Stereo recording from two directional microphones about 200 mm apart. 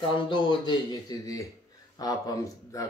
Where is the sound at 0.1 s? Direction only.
25° left (ahead or behind).